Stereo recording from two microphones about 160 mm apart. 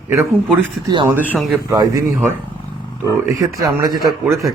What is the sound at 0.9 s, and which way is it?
Speech, 25° right (ahead or behind).